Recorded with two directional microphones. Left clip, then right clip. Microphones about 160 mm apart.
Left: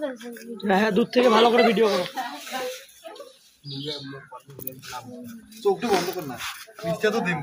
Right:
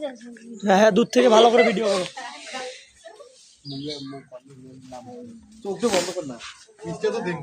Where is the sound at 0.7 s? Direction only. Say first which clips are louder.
Right 5 dB; 90° right.